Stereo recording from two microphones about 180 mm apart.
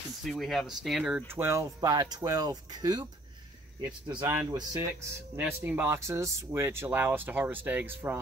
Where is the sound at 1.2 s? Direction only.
15° right (ahead or behind).